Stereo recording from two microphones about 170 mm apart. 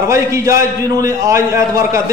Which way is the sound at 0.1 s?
15° right (ahead or behind).